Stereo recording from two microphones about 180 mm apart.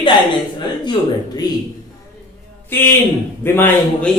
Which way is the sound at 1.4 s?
20° left (ahead or behind).